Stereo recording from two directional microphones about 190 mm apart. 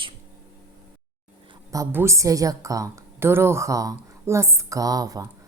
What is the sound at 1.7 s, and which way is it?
A woman's voice, 15° right (ahead or behind).